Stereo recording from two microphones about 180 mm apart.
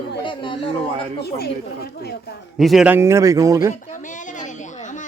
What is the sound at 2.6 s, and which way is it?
A man's voice, centre (ahead or behind).